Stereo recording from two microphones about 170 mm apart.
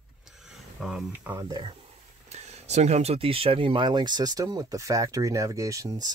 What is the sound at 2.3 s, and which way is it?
Speech, 40° right (ahead or behind).